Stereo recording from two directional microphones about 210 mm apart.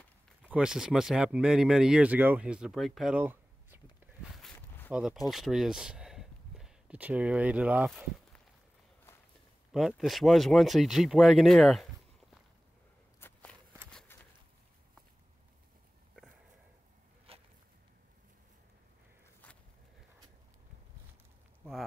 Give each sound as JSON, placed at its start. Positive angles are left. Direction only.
{"t": 0.4, "sound": "speech", "side_deg": -5}
{"t": 4.4, "sound": "zipper", "side_deg": 5}
{"t": 4.9, "sound": "speech", "side_deg": 0}
{"t": 9.7, "sound": "speech", "side_deg": 0}
{"t": 13.2, "sound": "walk", "side_deg": 10}
{"t": 17.3, "sound": "a sound", "side_deg": -25}
{"t": 19.4, "sound": "walk", "side_deg": 5}